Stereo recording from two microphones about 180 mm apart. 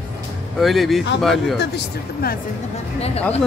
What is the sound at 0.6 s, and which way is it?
Speech, centre (ahead or behind).